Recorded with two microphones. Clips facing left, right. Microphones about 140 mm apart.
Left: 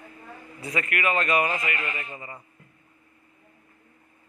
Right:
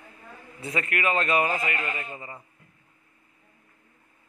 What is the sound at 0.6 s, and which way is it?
A man's voice, 30° right (ahead or behind).